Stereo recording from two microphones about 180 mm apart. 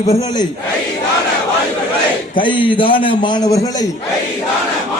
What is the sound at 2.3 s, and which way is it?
A man's voice, 25° left (ahead or behind).